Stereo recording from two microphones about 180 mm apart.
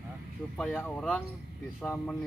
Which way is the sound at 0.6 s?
5° left (ahead or behind).